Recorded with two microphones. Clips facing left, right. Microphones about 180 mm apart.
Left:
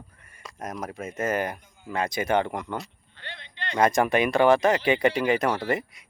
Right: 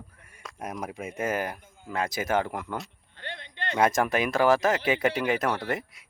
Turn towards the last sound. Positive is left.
turn(degrees=0)  # may be behind; listen again after turning